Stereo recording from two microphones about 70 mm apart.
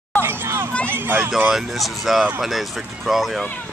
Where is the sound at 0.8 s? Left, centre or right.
Right.